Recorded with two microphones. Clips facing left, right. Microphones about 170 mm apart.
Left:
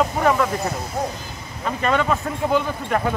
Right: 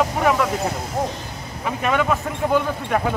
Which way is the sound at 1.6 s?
5° right (ahead or behind).